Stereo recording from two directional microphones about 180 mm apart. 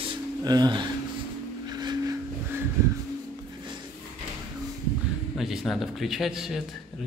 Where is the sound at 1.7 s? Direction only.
25° right (ahead or behind).